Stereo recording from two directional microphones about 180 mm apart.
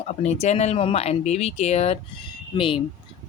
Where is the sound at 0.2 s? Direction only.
40° left (ahead or behind).